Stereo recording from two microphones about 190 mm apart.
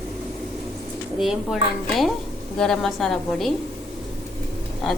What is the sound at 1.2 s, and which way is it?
A woman's voice, centre (ahead or behind).